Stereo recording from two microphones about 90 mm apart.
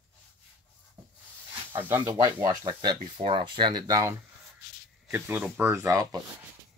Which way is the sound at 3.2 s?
75° right (ahead or behind).